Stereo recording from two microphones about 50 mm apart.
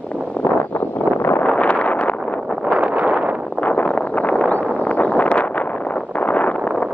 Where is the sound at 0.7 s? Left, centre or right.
Left.